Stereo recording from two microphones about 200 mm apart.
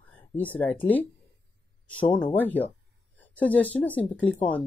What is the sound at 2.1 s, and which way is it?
Speech, 25° left (ahead or behind).